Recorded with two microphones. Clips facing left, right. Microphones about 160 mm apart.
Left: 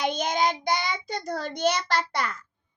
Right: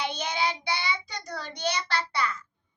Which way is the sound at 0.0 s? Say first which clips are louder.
Left 5 dB; 50° left (ahead or behind).